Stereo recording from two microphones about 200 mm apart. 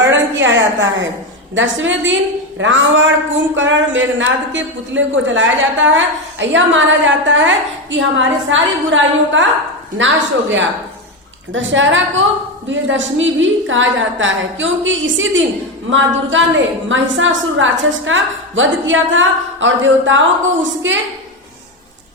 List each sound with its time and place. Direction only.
0.0 s a sound: 65° right (ahead or behind)
1.5 s a woman's voice: 70° right (ahead or behind)
11.5 s a woman's voice: 70° right (ahead or behind)